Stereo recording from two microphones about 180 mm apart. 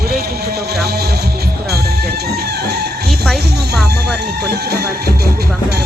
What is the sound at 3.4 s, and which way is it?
Music, 65° right (ahead or behind).